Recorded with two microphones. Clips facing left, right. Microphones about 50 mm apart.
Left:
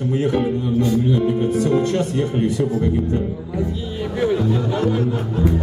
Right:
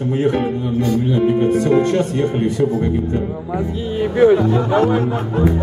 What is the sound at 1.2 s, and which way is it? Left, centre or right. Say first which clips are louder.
Speech: right 4 dB; right.